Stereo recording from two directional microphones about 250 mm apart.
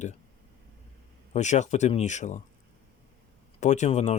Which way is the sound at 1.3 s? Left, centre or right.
Left.